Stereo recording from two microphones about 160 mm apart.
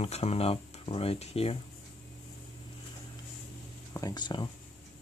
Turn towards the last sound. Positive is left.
turn(degrees=30)  # may be behind; listen again after turning